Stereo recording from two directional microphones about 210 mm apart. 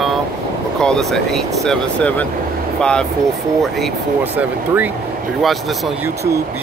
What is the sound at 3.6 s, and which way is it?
Speech, centre (ahead or behind).